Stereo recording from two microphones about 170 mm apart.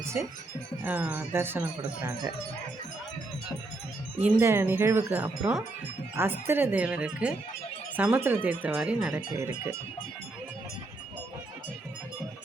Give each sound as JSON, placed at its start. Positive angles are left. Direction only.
{"t": 0.0, "sound": "music", "side_deg": -15}
{"t": 0.8, "sound": "speech", "side_deg": -10}
{"t": 4.2, "sound": "speech", "side_deg": -15}